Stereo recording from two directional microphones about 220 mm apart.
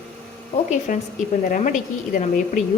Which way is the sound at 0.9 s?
35° left (ahead or behind).